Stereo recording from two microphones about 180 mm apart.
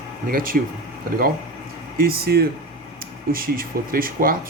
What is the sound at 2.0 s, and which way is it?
Speech, 55° right (ahead or behind).